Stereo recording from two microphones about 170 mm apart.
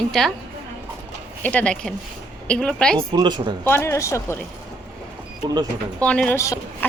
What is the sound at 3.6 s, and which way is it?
Speech, 15° left (ahead or behind).